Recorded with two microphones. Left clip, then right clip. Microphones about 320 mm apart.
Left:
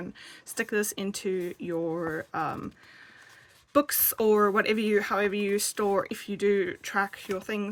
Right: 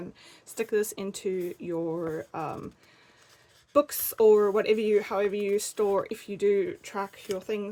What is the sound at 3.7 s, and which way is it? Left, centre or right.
Speech, left.